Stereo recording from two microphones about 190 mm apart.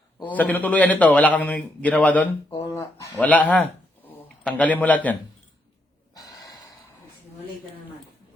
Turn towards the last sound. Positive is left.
turn(degrees=20)  # may be behind; listen again after turning